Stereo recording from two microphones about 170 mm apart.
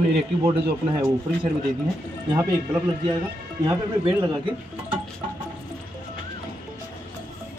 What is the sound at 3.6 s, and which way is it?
Speech, 20° right (ahead or behind).